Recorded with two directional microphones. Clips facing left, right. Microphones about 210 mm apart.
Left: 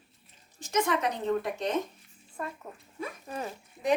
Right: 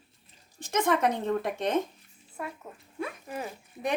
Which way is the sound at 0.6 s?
55° right (ahead or behind).